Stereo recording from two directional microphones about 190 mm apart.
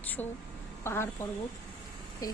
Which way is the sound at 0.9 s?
10° left (ahead or behind).